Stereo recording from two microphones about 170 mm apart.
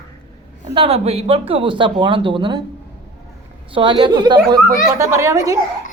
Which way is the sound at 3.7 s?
30° right (ahead or behind).